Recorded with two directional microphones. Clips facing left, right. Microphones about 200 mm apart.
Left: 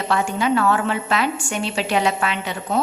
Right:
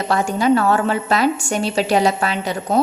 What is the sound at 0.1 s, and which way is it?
A woman's voice, 40° right (ahead or behind).